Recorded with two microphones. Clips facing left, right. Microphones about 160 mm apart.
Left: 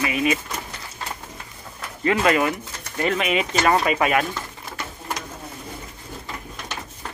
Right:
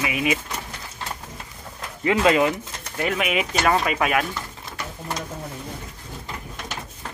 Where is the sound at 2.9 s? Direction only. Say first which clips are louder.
Left 1 dB; 5° right (ahead or behind).